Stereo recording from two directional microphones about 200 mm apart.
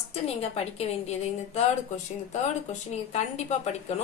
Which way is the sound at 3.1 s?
35° left (ahead or behind).